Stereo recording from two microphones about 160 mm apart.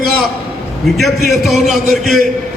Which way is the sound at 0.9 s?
Centre (ahead or behind).